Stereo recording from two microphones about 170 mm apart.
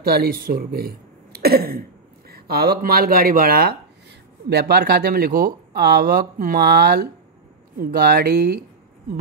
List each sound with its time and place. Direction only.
0.0 s speech: 60° right (ahead or behind)
4.5 s speech: 70° right (ahead or behind)